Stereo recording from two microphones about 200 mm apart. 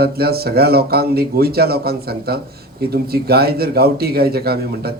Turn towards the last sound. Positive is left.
turn(degrees=-50)  # may be behind; listen again after turning